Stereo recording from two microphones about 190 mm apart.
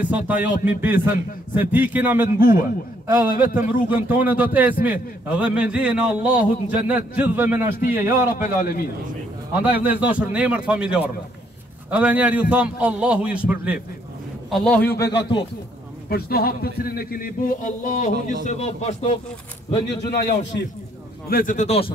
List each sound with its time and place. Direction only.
0.0 s a man's voice: 10° right (ahead or behind)
8.3 s speech: 50° left (ahead or behind)
9.8 s a man's voice: 5° right (ahead or behind)
14.5 s speech: 5° left (ahead or behind)
15.0 s a man's voice: 60° left (ahead or behind); by 19.1 s 35° left (ahead or behind)
19.9 s a man's voice: 60° left (ahead or behind)
21.3 s speech: 45° left (ahead or behind)